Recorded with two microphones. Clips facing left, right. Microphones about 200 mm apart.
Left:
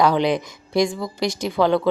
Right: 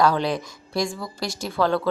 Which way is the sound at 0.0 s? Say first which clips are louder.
Left 3 dB; 20° left (ahead or behind).